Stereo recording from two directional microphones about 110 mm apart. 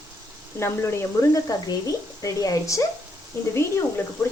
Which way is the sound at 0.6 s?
20° left (ahead or behind).